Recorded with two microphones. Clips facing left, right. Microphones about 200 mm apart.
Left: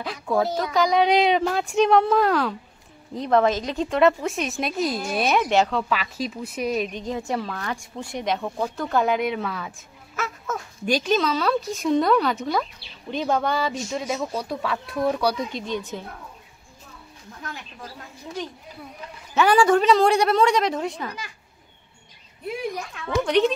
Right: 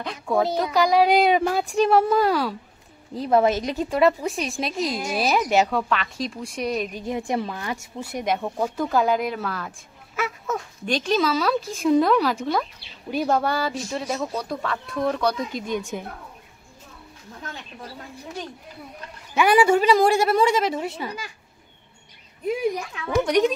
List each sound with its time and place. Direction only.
0.0 s speech: centre (ahead or behind)
5.9 s speech: 5° left (ahead or behind)
7.2 s a woman's voice: 15° right (ahead or behind)
7.8 s speech: 5° right (ahead or behind)
10.1 s a sound: 15° right (ahead or behind)
10.5 s speech: 5° left (ahead or behind)
15.9 s a woman's voice: 15° right (ahead or behind)
19.3 s a woman's voice: 10° right (ahead or behind)
23.0 s a woman's voice: 10° right (ahead or behind)